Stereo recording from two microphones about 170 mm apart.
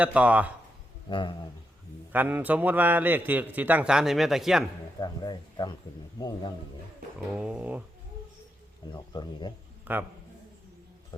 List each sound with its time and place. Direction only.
0.0 s a man's voice: 10° right (ahead or behind)
1.1 s speech: 25° left (ahead or behind)
2.1 s a man's voice: 10° right (ahead or behind)
4.9 s speech: 25° left (ahead or behind)
7.3 s a man's voice: 5° right (ahead or behind)
8.9 s speech: 25° left (ahead or behind)
9.8 s a man's voice: 10° right (ahead or behind)